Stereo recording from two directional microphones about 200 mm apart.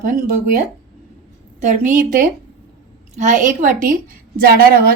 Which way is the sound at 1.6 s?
40° right (ahead or behind).